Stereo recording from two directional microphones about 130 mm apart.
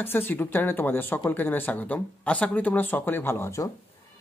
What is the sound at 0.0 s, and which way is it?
Speech, 15° left (ahead or behind).